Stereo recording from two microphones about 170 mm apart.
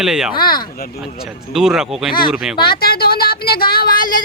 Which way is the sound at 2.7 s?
65° left (ahead or behind).